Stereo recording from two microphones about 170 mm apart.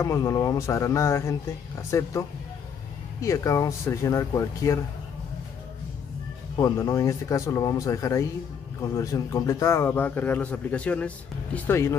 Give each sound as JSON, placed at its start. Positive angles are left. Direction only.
{"t": 0.0, "sound": "a man's voice", "side_deg": 15}
{"t": 6.6, "sound": "a man's voice", "side_deg": 20}